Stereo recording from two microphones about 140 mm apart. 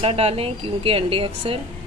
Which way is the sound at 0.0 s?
45° right (ahead or behind).